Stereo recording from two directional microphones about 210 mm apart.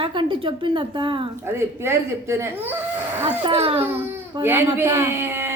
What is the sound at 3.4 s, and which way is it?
Speech, 25° right (ahead or behind).